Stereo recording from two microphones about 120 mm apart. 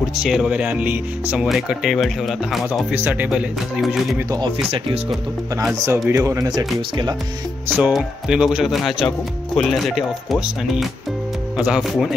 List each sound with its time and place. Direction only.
0.1 s speech: 5° right (ahead or behind)
2.9 s speech: 15° right (ahead or behind)
5.9 s speech: 25° right (ahead or behind)
7.6 s speech: 15° right (ahead or behind)